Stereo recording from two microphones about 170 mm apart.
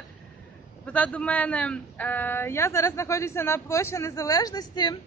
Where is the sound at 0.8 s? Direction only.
10° left (ahead or behind).